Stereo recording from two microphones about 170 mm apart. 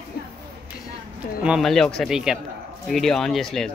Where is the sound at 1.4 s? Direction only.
Centre (ahead or behind).